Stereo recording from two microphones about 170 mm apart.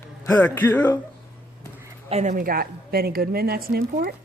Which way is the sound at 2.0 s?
40° right (ahead or behind).